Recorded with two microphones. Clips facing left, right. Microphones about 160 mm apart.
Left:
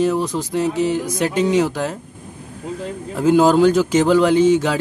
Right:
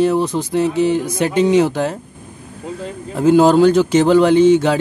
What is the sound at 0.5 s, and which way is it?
Music, 5° left (ahead or behind).